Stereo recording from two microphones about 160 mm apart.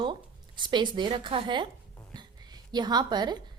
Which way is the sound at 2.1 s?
25° right (ahead or behind).